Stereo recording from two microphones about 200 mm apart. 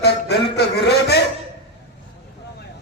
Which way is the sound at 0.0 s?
55° left (ahead or behind).